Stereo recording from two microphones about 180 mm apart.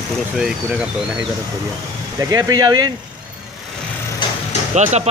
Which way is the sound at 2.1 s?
20° right (ahead or behind).